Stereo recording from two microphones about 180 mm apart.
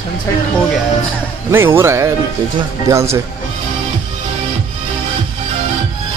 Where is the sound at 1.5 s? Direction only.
15° right (ahead or behind).